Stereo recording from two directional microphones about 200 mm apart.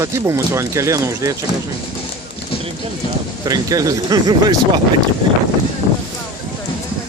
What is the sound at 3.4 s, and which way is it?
Speech, 20° right (ahead or behind).